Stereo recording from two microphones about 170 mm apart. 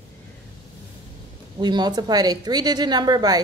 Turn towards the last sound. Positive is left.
turn(degrees=-25)  # may be behind; listen again after turning